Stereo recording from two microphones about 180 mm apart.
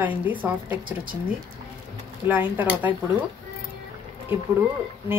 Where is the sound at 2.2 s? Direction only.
10° right (ahead or behind).